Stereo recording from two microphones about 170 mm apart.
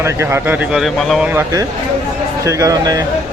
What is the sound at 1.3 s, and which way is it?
Speech, 15° right (ahead or behind).